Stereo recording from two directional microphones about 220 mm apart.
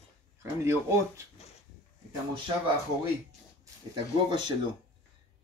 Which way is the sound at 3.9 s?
20° right (ahead or behind).